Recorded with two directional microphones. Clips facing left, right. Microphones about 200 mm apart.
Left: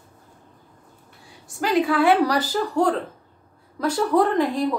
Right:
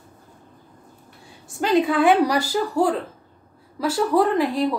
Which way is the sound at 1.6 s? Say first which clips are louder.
Right 1 dB; 25° right (ahead or behind).